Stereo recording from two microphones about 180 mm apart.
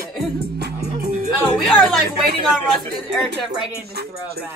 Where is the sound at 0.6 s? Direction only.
60° right (ahead or behind).